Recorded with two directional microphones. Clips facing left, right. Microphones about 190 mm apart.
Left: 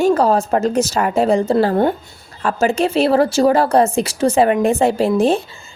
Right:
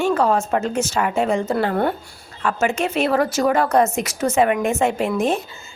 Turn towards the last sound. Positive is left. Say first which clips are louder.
# left 5 dB
turn(degrees=30)  # may be behind; listen again after turning